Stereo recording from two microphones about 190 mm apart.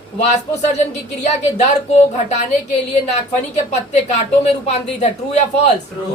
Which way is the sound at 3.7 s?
35° left (ahead or behind).